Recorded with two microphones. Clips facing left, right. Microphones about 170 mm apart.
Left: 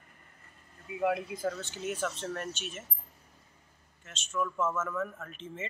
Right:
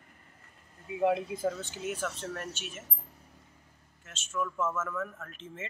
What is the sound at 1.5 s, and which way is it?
Speech, 10° right (ahead or behind).